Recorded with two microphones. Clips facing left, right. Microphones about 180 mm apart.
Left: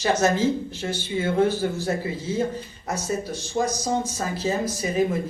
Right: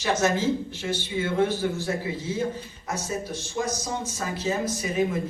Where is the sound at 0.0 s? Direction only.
40° left (ahead or behind).